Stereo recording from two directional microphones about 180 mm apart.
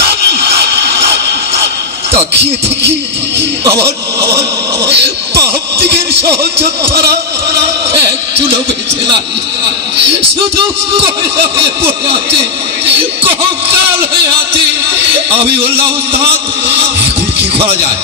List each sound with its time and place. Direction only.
3.3 s speech: 15° right (ahead or behind)
4.8 s speech: 70° right (ahead or behind)
6.9 s speech: 60° right (ahead or behind)